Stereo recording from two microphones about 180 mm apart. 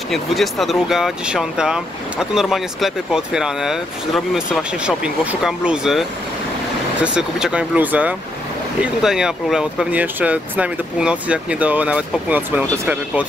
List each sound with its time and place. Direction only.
0.1 s speech: centre (ahead or behind)